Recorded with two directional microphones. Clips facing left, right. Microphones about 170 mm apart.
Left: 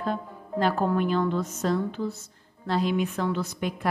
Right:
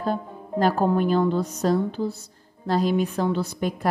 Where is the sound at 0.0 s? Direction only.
40° right (ahead or behind).